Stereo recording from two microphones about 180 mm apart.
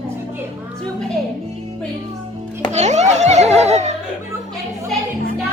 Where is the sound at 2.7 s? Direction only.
40° right (ahead or behind).